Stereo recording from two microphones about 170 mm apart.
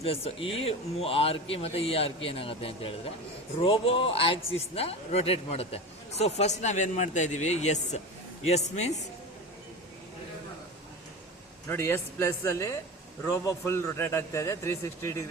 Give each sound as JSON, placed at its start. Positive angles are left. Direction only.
{"t": 0.0, "sound": "a man's voice", "side_deg": 35}
{"t": 11.7, "sound": "a man's voice", "side_deg": 15}